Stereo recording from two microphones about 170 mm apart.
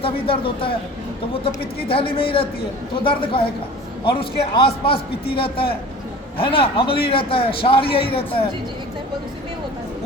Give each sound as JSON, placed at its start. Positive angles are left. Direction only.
{"t": 0.0, "sound": "a man's voice", "side_deg": 30}
{"t": 1.9, "sound": "a man's voice", "side_deg": 30}